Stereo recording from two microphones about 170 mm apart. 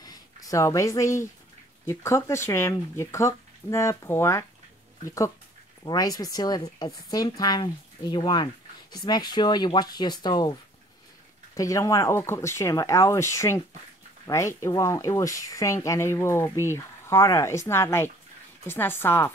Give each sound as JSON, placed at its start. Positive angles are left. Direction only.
{"t": 0.0, "sound": "speech", "side_deg": 20}
{"t": 11.5, "sound": "speech", "side_deg": 20}